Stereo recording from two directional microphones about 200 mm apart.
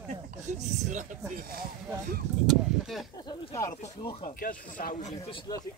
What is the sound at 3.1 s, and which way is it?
Speech, 20° left (ahead or behind).